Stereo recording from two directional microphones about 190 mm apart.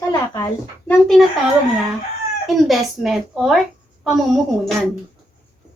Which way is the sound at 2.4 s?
Centre (ahead or behind).